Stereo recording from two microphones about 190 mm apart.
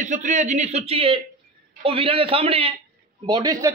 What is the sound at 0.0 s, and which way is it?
A man's voice, 40° right (ahead or behind).